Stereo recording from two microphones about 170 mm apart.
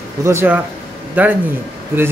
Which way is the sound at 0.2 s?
15° right (ahead or behind).